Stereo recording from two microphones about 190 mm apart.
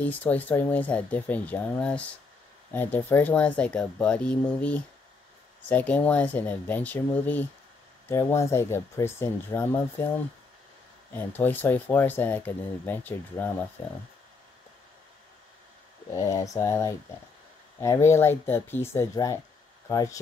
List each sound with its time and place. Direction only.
0.0 s speech: 10° left (ahead or behind)
11.1 s speech: 10° left (ahead or behind)
16.1 s speech: 15° left (ahead or behind)